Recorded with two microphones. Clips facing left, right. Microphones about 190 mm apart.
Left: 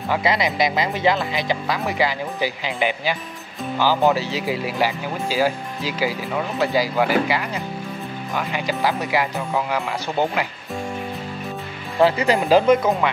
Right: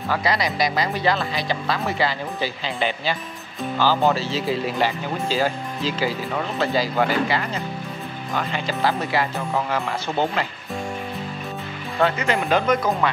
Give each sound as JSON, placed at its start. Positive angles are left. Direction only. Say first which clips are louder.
{"t": 0.1, "sound": "speech", "louder": "left 2 dB", "side_deg": 20}
{"t": 12.0, "sound": "speech", "louder": "left 4 dB", "side_deg": 30}